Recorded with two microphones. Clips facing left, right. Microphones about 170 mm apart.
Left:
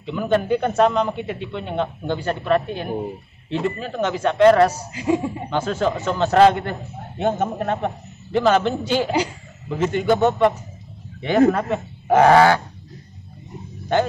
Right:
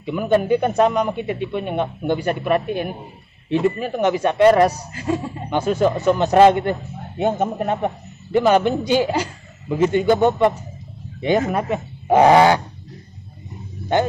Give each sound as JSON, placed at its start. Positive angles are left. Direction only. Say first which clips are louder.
{"t": 0.0, "sound": "a man's voice", "louder": "right 2 dB", "side_deg": -10}
{"t": 4.9, "sound": "speech", "louder": "left 3 dB", "side_deg": 15}
{"t": 5.5, "sound": "a man's voice", "louder": "right 4 dB", "side_deg": -15}
{"t": 11.5, "sound": "a man's voice", "louder": "right 1 dB", "side_deg": -15}